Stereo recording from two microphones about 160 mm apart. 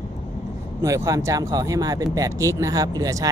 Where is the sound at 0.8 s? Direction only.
20° right (ahead or behind).